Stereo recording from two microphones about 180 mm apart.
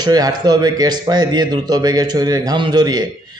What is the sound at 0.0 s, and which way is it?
A man's voice, 20° right (ahead or behind).